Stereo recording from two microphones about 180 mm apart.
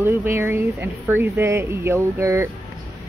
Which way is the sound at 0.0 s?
15° right (ahead or behind).